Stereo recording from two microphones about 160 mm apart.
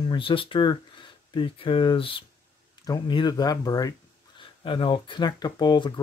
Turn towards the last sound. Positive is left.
turn(degrees=30)  # may be behind; listen again after turning